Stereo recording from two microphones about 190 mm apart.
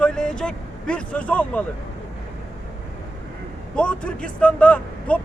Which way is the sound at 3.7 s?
5° left (ahead or behind).